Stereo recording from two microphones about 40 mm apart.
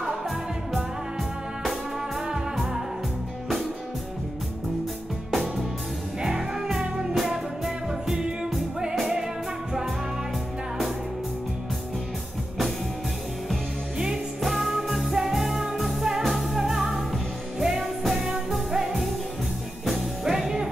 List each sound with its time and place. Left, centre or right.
1.6 s music: centre
5.3 s music: centre
6.2 s music: centre
13.9 s music: centre
14.4 s music: centre